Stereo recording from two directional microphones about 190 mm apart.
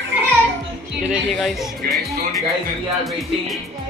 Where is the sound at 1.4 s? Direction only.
Centre (ahead or behind).